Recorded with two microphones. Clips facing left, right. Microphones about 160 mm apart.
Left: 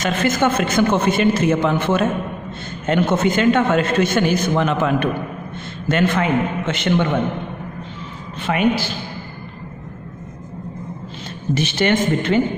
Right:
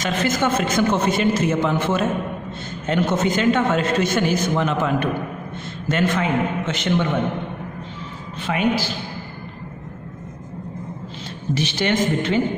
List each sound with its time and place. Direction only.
0.0 s a man's voice: 55° left (ahead or behind)
8.4 s a man's voice: 60° left (ahead or behind)
11.5 s speech: 55° left (ahead or behind)